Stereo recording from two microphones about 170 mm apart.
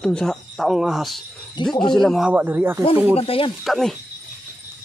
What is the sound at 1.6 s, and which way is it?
Speech, 25° left (ahead or behind).